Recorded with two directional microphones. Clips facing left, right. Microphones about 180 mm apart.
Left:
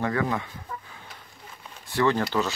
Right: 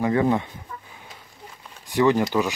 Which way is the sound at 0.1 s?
25° right (ahead or behind).